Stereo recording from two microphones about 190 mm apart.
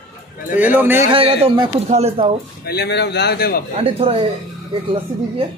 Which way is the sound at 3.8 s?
30° right (ahead or behind).